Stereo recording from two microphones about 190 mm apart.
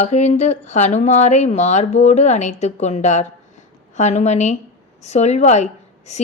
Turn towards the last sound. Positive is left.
turn(degrees=35)  # may be behind; listen again after turning